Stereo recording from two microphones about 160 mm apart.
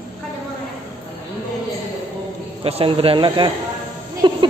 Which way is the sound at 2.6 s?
35° right (ahead or behind).